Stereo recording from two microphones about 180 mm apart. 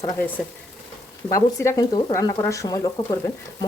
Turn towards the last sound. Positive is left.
turn(degrees=20)  # may be behind; listen again after turning